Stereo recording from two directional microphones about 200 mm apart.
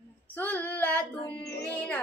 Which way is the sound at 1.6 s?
5° left (ahead or behind).